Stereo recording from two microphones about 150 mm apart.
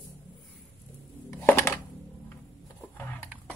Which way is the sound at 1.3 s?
15° left (ahead or behind).